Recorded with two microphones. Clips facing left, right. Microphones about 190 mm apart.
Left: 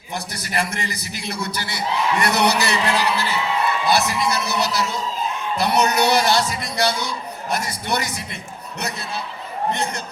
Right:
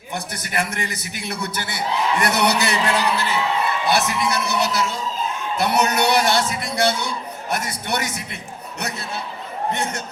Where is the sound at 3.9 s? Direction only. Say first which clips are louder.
Even; 60° right (ahead or behind).